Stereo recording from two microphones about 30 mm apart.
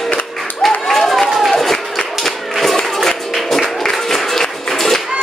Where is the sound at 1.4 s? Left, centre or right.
Centre.